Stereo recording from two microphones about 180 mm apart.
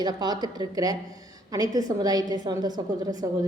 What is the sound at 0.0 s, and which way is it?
A woman's voice, 20° right (ahead or behind).